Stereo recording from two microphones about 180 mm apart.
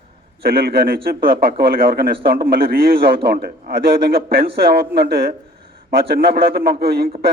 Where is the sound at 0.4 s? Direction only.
60° right (ahead or behind).